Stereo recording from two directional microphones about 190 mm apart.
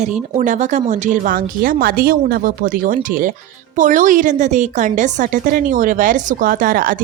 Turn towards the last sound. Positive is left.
turn(degrees=-45)  # may be behind; listen again after turning